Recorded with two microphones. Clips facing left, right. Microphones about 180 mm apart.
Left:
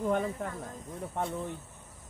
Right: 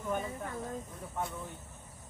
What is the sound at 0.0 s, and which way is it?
Speech, 55° left (ahead or behind).